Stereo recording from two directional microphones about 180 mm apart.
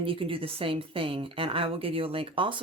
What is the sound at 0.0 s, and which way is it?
A woman's voice, 30° right (ahead or behind).